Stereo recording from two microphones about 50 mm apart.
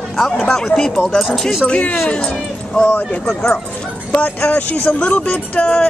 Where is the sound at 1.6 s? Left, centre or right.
Left.